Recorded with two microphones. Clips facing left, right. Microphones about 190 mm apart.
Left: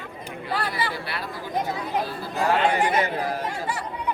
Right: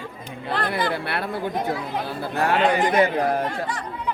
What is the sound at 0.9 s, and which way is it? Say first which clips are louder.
Speech: right 6 dB; 60° right (ahead or behind).